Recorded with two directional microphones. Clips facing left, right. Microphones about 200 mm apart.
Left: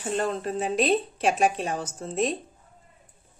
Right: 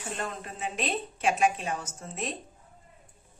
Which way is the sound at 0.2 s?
35° left (ahead or behind).